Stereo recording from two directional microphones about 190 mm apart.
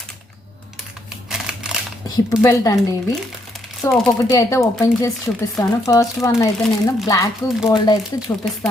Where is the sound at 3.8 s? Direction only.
15° left (ahead or behind).